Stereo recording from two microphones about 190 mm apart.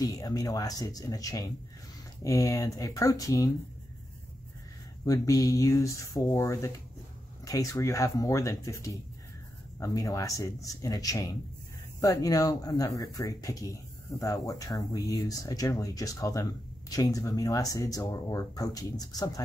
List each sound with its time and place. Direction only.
0.0 s speech: 20° left (ahead or behind)
5.0 s speech: 15° left (ahead or behind)